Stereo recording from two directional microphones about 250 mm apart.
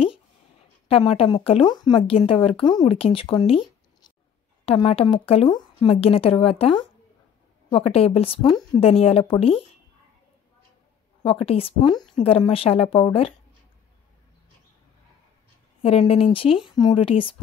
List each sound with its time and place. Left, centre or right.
0.8 s speech: left
11.4 s speech: left
15.8 s speech: left